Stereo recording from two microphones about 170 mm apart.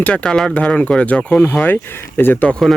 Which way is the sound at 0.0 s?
5° left (ahead or behind).